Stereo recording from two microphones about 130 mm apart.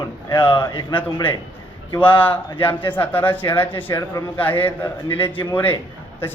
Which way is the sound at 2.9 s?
15° left (ahead or behind).